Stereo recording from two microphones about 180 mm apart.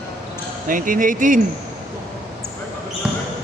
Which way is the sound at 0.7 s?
50° right (ahead or behind).